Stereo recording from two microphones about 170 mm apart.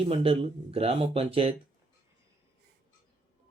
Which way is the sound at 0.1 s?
35° right (ahead or behind).